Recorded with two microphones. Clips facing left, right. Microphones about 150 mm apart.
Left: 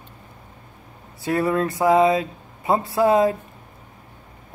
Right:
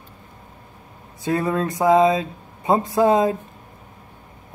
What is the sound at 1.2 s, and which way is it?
Speech, 20° right (ahead or behind).